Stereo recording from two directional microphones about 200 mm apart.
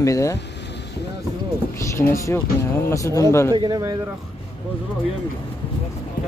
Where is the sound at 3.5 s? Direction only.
20° right (ahead or behind).